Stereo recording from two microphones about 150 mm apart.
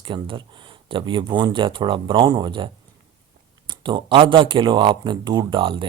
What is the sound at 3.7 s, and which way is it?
Speech, 30° right (ahead or behind).